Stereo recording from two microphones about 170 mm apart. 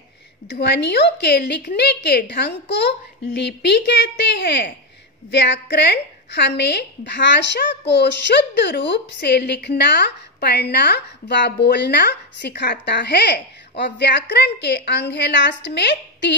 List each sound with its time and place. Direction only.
0.5 s a woman's voice: 85° left